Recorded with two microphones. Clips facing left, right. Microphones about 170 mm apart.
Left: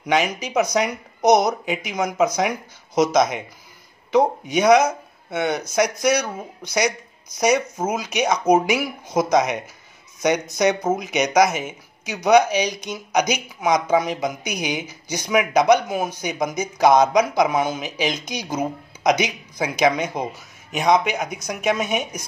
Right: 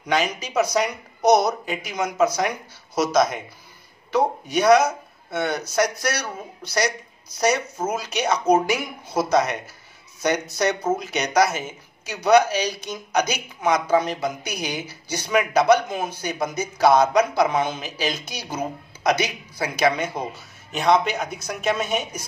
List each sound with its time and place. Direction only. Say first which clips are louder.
0.0 s speech: left 2 dB; 10° left (ahead or behind)
4.1 s speech: left 3 dB; 15° left (ahead or behind)